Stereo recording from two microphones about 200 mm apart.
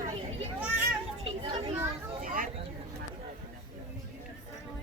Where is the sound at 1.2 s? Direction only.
25° right (ahead or behind).